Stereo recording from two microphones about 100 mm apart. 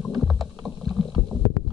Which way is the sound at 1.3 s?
Centre (ahead or behind).